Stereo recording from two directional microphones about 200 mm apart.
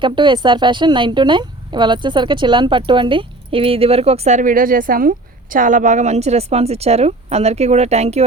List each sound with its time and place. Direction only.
0.0 s a woman's voice: 25° right (ahead or behind)